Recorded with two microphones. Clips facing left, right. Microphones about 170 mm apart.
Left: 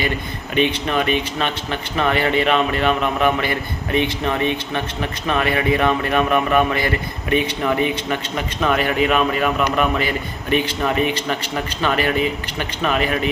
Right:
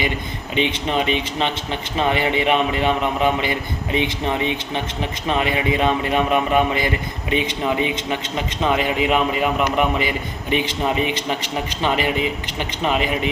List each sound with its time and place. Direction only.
0.5 s speech: 20° right (ahead or behind)